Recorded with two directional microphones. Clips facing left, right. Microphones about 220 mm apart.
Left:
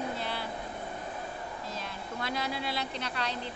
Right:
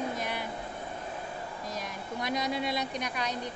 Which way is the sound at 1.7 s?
15° right (ahead or behind).